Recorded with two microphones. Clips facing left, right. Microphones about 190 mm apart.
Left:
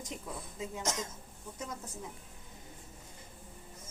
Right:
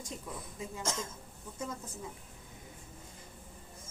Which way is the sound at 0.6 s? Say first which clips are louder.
Left 1 dB; 15° left (ahead or behind).